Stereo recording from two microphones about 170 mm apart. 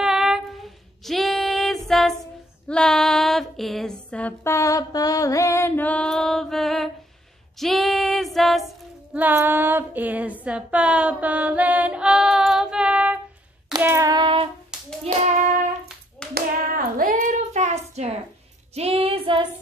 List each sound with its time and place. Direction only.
0.0 s female singing: 5° right (ahead or behind)
9.1 s female singing: 10° right (ahead or behind)
13.7 s hands: 20° right (ahead or behind)
14.7 s hands: 5° right (ahead or behind)
15.1 s child singing: 55° right (ahead or behind)
16.3 s hands: 55° right (ahead or behind); by 18.2 s 40° right (ahead or behind)
18.8 s child singing: 35° right (ahead or behind)